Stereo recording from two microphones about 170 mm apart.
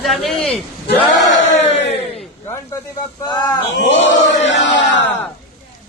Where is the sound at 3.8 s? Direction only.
90° left.